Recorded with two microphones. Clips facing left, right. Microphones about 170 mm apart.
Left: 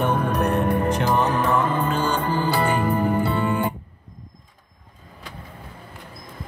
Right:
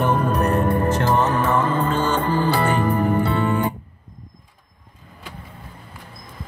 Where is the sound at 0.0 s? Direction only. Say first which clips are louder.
Right 2 dB; centre (ahead or behind).